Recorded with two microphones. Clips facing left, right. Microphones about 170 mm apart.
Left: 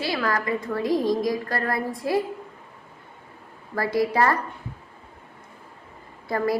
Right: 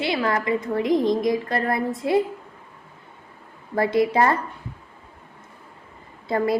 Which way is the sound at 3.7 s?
20° right (ahead or behind).